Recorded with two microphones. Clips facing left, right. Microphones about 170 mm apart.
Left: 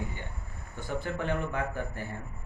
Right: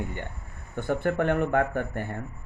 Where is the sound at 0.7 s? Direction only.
60° right (ahead or behind).